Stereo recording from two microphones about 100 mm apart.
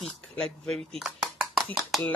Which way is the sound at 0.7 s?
Centre (ahead or behind).